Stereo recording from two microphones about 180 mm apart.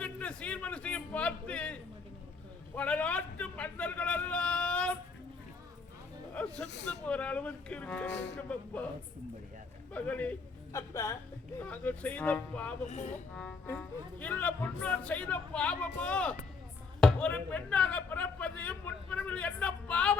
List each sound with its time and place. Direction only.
0.0 s a sound: 5° left (ahead or behind)
6.3 s a sound: 5° left (ahead or behind)
7.1 s speech: 5° left (ahead or behind)
9.9 s a man's voice: 10° left (ahead or behind)
12.9 s speech: 40° left (ahead or behind)
13.3 s speech: 5° left (ahead or behind)